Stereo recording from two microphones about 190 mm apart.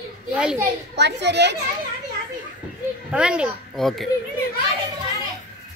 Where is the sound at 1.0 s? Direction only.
65° right (ahead or behind).